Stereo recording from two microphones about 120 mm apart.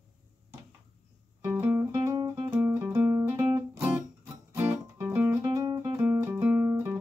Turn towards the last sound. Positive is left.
turn(degrees=-15)  # may be behind; listen again after turning